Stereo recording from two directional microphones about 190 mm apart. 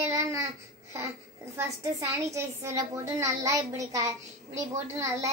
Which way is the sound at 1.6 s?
15° right (ahead or behind).